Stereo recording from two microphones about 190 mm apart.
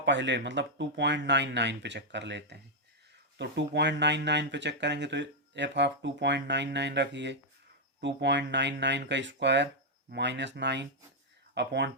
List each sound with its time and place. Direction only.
0.0 s speech: 70° right (ahead or behind)